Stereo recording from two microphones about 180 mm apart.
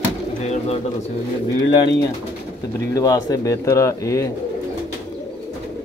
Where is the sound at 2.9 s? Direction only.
20° left (ahead or behind).